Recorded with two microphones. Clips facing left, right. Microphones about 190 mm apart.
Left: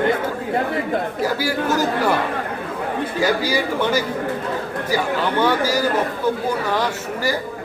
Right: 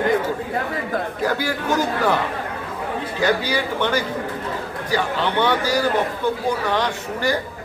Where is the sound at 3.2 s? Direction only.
10° left (ahead or behind).